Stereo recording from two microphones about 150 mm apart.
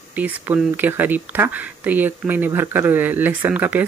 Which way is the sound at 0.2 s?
10° right (ahead or behind).